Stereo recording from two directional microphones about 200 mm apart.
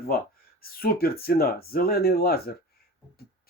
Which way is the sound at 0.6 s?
50° left (ahead or behind).